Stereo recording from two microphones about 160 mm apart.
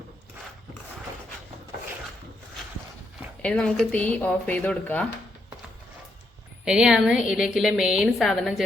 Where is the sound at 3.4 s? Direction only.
5° left (ahead or behind).